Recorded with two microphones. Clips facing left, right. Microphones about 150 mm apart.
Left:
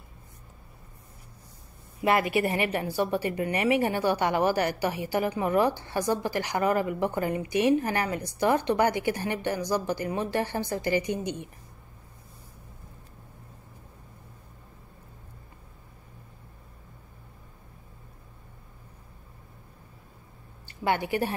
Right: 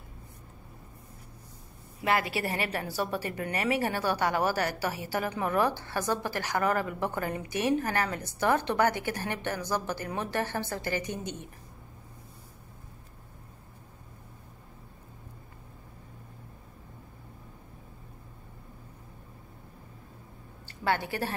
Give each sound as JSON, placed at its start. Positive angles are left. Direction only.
{"t": 2.0, "sound": "a woman's voice", "side_deg": 20}
{"t": 20.6, "sound": "a woman's voice", "side_deg": 15}